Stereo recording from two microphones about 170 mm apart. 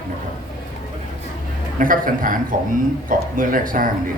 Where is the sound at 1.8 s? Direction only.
55° right (ahead or behind).